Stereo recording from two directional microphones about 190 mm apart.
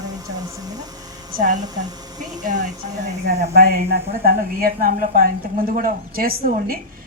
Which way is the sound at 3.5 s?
50° right (ahead or behind).